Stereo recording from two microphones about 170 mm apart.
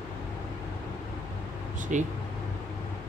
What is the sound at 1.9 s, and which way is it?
Speech, 50° right (ahead or behind).